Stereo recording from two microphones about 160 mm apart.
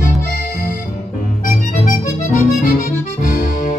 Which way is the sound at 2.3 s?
55° left (ahead or behind).